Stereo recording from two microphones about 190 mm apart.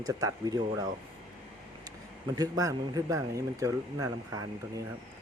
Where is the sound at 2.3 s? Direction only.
20° right (ahead or behind).